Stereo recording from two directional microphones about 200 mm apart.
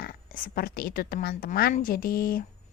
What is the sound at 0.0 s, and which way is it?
A woman's voice, 50° left (ahead or behind).